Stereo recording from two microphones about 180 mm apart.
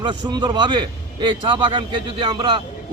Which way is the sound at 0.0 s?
25° right (ahead or behind).